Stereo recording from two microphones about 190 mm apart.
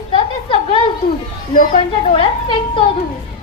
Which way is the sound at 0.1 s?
30° left (ahead or behind).